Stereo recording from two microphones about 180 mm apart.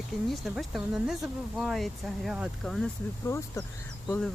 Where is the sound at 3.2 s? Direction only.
15° left (ahead or behind).